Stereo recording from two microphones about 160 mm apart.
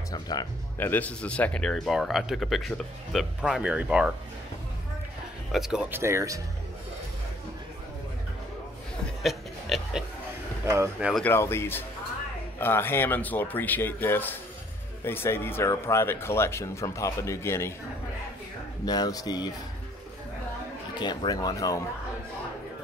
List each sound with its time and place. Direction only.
0.1 s speech: 25° left (ahead or behind)
0.7 s speech: 10° left (ahead or behind); by 4.1 s 5° right (ahead or behind)
5.5 s speech: 5° right (ahead or behind)
5.9 s speech: 15° right (ahead or behind)
9.0 s a sound: centre (ahead or behind)
10.6 s speech: 15° right (ahead or behind)
11.0 s speech: 5° right (ahead or behind)
11.2 s speech: 15° left (ahead or behind)
18.9 s speech: 25° left (ahead or behind)
20.9 s speech: 25° left (ahead or behind)